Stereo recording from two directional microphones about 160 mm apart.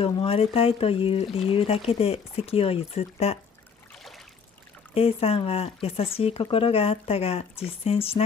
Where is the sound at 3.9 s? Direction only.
Centre (ahead or behind).